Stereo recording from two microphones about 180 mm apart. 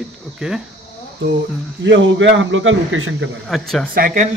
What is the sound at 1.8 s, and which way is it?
A man's voice, 90° right.